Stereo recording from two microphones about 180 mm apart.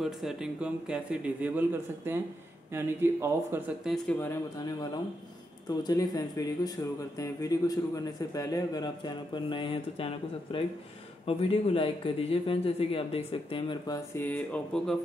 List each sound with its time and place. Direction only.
0.0 s a man's voice: centre (ahead or behind)
3.9 s speech: 10° left (ahead or behind)
4.6 s speech: 20° left (ahead or behind)
14.2 s speech: 10° left (ahead or behind)